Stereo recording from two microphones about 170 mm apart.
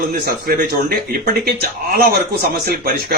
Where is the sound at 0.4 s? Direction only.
60° right (ahead or behind).